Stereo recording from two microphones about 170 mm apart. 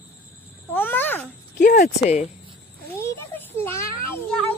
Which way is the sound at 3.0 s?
15° left (ahead or behind).